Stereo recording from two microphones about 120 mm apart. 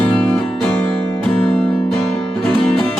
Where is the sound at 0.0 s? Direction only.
5° left (ahead or behind).